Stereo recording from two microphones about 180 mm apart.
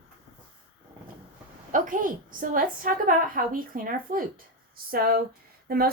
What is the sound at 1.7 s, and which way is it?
A woman's voice, 50° right (ahead or behind).